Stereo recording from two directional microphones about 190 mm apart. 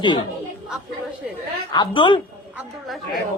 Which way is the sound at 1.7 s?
25° left (ahead or behind).